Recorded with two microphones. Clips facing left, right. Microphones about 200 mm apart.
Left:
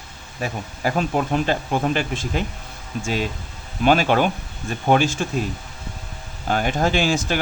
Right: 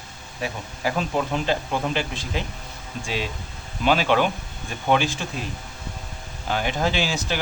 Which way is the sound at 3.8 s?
50° left (ahead or behind).